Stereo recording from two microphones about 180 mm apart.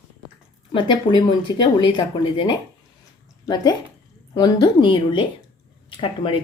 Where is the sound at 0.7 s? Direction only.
25° left (ahead or behind).